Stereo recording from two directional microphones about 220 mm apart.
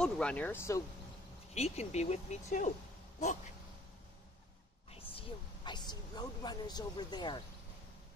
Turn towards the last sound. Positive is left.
turn(degrees=20)  # may be behind; listen again after turning